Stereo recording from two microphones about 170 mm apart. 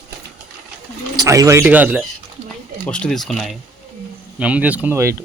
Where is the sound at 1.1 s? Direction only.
20° right (ahead or behind).